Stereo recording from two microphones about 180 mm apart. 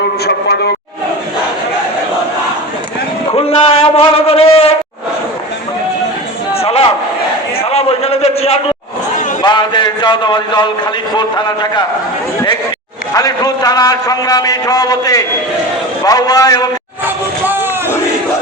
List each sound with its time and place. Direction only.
0.3 s a man's voice: 65° left (ahead or behind)
3.3 s a man's voice: 30° left (ahead or behind)
6.5 s crowd: 35° left (ahead or behind)
7.7 s a sound: 35° left (ahead or behind)
9.4 s a man's voice: 25° left (ahead or behind)
13.1 s a man's voice: 20° left (ahead or behind)
17.4 s a sound: 10° right (ahead or behind)